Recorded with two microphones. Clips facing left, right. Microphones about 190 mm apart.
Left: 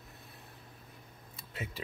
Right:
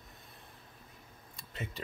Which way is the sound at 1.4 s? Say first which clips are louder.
Even; 5° left (ahead or behind).